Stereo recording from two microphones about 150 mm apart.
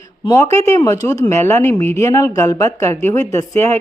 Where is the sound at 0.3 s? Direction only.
20° left (ahead or behind).